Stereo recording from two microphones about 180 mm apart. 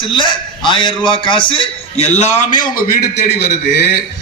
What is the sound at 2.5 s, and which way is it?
Speech, 50° left (ahead or behind).